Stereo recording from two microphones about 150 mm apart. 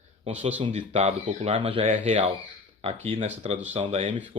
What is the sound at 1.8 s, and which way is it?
Speech, 45° right (ahead or behind).